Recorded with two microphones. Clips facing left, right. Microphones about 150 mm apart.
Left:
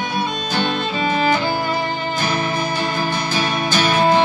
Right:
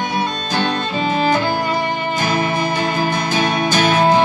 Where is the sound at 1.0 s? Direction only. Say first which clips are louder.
Right 1 dB; 35° right (ahead or behind).